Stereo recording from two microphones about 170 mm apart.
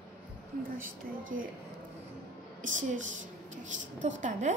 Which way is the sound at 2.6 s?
50° right (ahead or behind).